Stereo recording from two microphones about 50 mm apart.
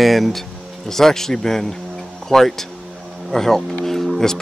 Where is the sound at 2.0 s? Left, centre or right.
Centre.